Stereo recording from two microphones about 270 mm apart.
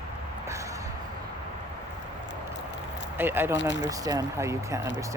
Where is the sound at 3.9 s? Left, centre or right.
Centre.